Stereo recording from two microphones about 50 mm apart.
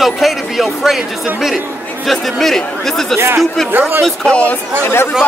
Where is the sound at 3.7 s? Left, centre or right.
Right.